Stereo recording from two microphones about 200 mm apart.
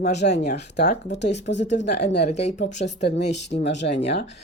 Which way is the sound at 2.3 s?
35° left (ahead or behind).